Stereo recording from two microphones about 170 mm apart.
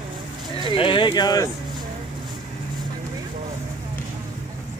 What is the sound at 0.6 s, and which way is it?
Speech, 30° left (ahead or behind).